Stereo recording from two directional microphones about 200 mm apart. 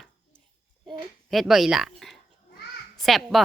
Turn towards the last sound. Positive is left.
turn(degrees=0)  # may be behind; listen again after turning